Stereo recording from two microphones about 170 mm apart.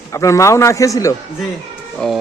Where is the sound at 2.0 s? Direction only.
5° left (ahead or behind).